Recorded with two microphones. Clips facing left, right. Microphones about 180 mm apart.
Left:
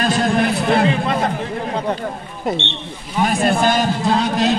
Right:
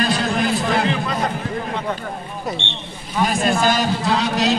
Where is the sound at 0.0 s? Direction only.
55° left (ahead or behind).